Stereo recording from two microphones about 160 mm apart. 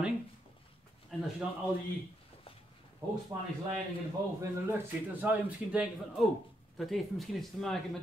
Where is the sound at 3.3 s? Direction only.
20° right (ahead or behind).